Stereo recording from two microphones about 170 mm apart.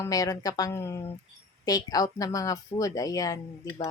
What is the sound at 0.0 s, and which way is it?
Speech, 20° left (ahead or behind).